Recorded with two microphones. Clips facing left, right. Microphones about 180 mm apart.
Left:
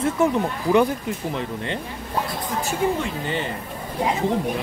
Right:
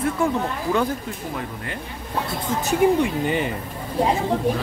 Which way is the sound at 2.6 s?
15° right (ahead or behind).